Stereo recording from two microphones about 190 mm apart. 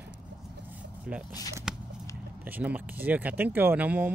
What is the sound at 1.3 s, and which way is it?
Speech, 20° left (ahead or behind).